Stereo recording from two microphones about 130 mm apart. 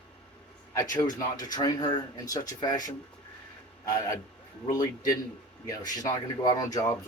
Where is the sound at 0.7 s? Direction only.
30° left (ahead or behind).